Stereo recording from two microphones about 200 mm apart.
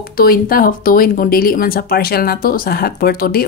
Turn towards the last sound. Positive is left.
turn(degrees=45)  # may be behind; listen again after turning